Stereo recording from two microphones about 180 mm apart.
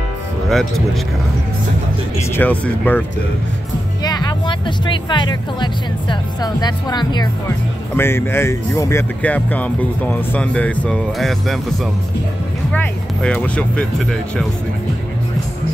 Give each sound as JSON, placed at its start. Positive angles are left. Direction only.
{"t": 0.5, "sound": "speech", "side_deg": 0}
{"t": 2.3, "sound": "speech", "side_deg": 10}
{"t": 4.0, "sound": "speech", "side_deg": 20}
{"t": 7.9, "sound": "speech", "side_deg": 15}